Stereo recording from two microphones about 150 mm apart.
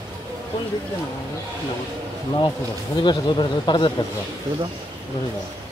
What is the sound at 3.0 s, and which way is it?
Speech, 30° left (ahead or behind).